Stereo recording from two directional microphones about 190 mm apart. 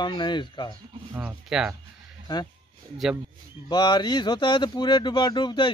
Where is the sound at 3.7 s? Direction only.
20° left (ahead or behind).